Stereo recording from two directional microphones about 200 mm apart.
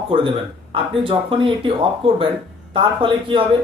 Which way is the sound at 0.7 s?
25° right (ahead or behind).